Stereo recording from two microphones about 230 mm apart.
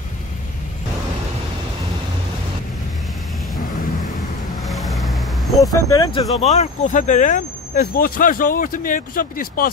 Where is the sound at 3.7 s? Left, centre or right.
Left.